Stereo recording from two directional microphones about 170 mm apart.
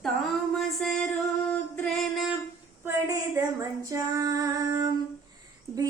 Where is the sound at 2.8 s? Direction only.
15° right (ahead or behind).